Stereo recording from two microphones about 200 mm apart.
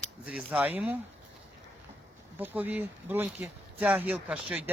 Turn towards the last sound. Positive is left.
turn(degrees=-5)  # may be behind; listen again after turning